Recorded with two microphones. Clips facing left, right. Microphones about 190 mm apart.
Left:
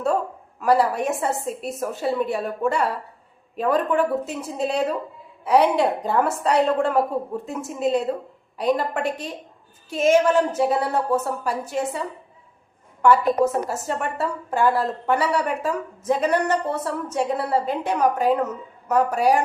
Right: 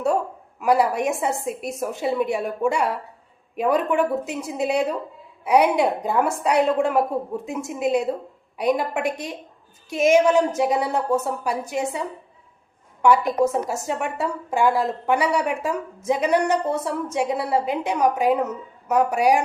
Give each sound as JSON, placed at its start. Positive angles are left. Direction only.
{"t": 0.6, "sound": "a woman's voice", "side_deg": -10}